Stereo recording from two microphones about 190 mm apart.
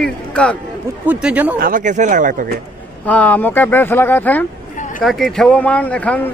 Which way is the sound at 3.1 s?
10° left (ahead or behind).